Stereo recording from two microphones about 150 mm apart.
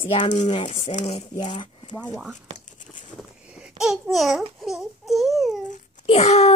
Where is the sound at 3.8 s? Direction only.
Centre (ahead or behind).